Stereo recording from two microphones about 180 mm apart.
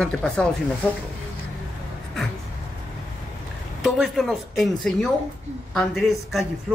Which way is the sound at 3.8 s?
Centre (ahead or behind).